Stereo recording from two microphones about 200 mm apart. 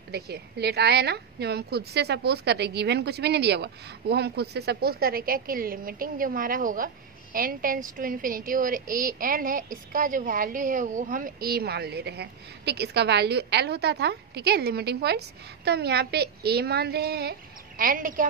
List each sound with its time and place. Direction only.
0.1 s a woman's voice: 55° right (ahead or behind)